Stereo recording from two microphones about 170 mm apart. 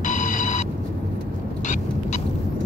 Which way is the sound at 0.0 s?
50° left (ahead or behind).